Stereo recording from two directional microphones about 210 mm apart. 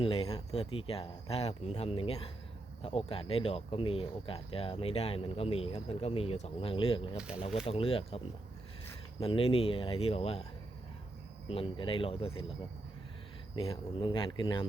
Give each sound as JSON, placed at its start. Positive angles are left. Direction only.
{"t": 0.0, "sound": "speech", "side_deg": 25}
{"t": 7.2, "sound": "speech", "side_deg": -5}
{"t": 7.7, "sound": "speech", "side_deg": 25}
{"t": 9.2, "sound": "speech", "side_deg": 25}
{"t": 11.4, "sound": "speech", "side_deg": 25}
{"t": 13.6, "sound": "speech", "side_deg": 25}